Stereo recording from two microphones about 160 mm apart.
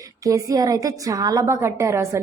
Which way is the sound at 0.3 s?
20° right (ahead or behind).